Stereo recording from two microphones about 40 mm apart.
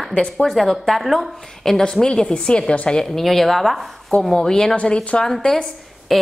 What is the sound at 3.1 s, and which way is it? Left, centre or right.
Speech, centre.